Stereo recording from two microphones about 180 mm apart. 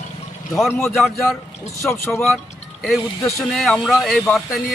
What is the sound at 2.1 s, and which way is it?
Speech, centre (ahead or behind).